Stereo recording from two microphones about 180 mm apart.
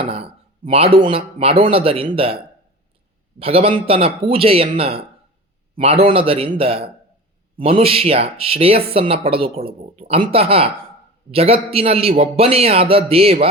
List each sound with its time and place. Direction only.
0.0 s a man's voice: 30° right (ahead or behind)